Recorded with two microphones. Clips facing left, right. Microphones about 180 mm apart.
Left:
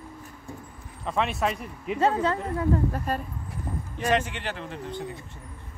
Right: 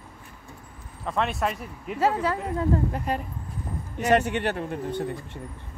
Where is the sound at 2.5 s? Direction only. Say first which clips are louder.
Even; 15° right (ahead or behind).